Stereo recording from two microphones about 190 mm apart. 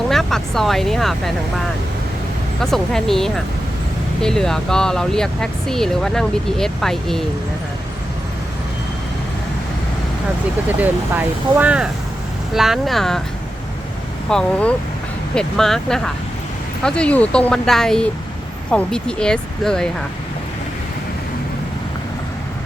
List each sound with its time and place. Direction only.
0.1 s speech: centre (ahead or behind)
2.6 s speech: centre (ahead or behind)
10.8 s speech: 10° right (ahead or behind)
14.3 s speech: 5° left (ahead or behind)